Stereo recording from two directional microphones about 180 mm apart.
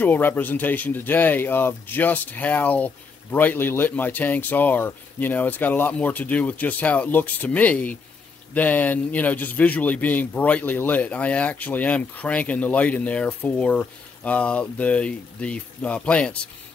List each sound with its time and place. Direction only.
0.0 s speech: 10° left (ahead or behind)